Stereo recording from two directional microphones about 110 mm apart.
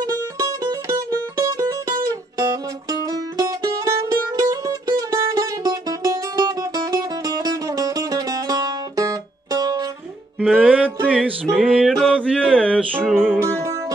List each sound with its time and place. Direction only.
0.4 s music: 35° right (ahead or behind)
10.6 s music: 15° right (ahead or behind)
11.8 s a sound: 5° left (ahead or behind)
13.0 s music: 5° right (ahead or behind)
13.4 s music: 25° right (ahead or behind)